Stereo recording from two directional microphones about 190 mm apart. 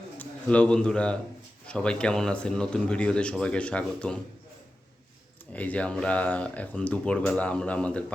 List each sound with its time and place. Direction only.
0.2 s a man's voice: 5° left (ahead or behind)
5.5 s speech: 5° left (ahead or behind)